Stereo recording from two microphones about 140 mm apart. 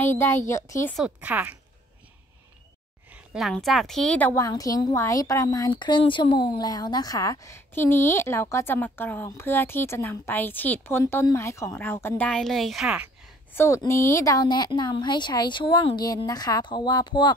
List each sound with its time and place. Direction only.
0.0 s a woman's voice: 15° left (ahead or behind)
0.9 s speech: 10° right (ahead or behind)
3.1 s a woman's voice: centre (ahead or behind)
4.4 s a woman's voice: 25° left (ahead or behind)
12.3 s speech: 5° left (ahead or behind)
13.6 s speech: 20° left (ahead or behind)